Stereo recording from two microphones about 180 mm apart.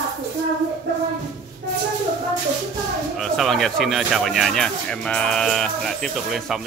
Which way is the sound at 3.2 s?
Centre (ahead or behind).